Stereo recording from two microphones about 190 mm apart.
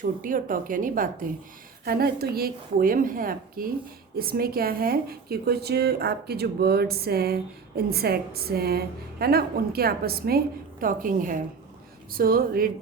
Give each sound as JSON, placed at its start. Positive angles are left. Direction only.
{"t": 0.0, "sound": "a woman's voice", "side_deg": -45}